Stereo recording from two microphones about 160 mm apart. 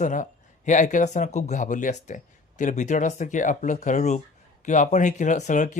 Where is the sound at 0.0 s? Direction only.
50° left (ahead or behind).